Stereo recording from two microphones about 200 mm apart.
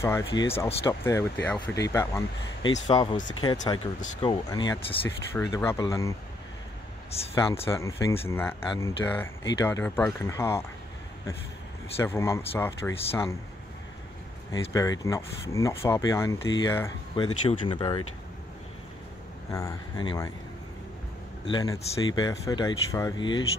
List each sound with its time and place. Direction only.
0.0 s speech: 15° left (ahead or behind)
0.8 s speech: 15° left (ahead or behind)
5.0 s speech: 15° left (ahead or behind)
7.1 s speech: 30° left (ahead or behind)
7.6 s speech: 15° left (ahead or behind)
12.0 s speech: 15° left (ahead or behind)
14.5 s speech: 15° left (ahead or behind)
17.1 s speech: 30° left (ahead or behind)
19.5 s speech: 15° left (ahead or behind)
21.5 s speech: 20° left (ahead or behind)